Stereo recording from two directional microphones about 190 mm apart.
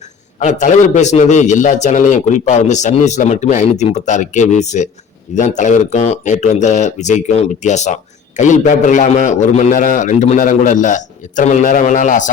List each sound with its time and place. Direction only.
0.3 s a man's voice: 40° left (ahead or behind)